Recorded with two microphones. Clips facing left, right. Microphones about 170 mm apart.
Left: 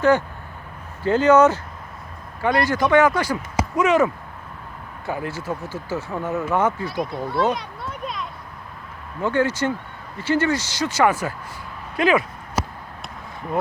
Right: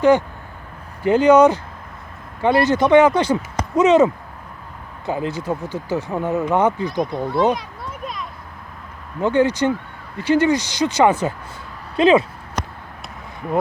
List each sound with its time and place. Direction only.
1.0 s a man's voice: 15° right (ahead or behind)
6.9 s speech: centre (ahead or behind)
7.5 s a sound: centre (ahead or behind)
9.2 s a man's voice: 20° right (ahead or behind)
12.6 s basketball bounce: 5° left (ahead or behind)